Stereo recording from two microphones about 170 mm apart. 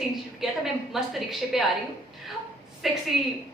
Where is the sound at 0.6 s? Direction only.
Centre (ahead or behind).